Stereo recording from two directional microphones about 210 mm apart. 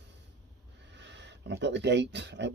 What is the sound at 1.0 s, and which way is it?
Speech, 55° right (ahead or behind).